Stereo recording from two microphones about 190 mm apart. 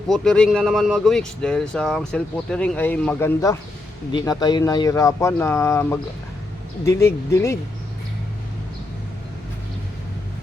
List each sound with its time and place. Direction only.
0.1 s speech: 5° left (ahead or behind)